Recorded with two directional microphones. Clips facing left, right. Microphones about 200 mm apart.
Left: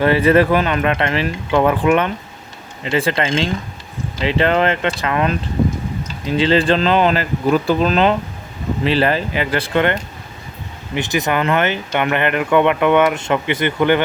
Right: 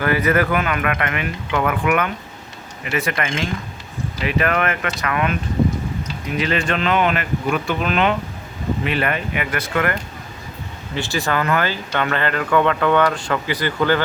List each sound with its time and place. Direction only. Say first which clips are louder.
0.0 s speech: left 5 dB; 25° left (ahead or behind)